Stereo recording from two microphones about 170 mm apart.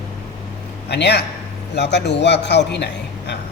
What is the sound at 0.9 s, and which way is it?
A man's voice, 85° left.